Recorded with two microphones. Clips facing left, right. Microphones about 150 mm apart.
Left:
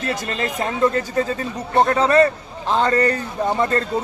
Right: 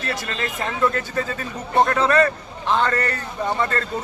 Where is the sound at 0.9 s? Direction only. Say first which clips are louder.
Left 4 dB; 35° left (ahead or behind).